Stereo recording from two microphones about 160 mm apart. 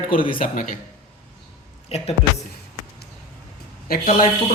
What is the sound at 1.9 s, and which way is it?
Speech, 40° left (ahead or behind).